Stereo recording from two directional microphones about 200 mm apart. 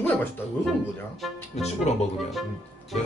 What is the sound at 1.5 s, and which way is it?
Speech, 35° left (ahead or behind).